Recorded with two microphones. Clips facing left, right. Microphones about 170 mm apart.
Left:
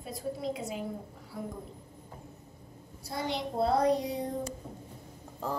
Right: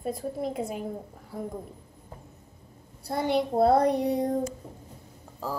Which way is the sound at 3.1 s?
60° right (ahead or behind).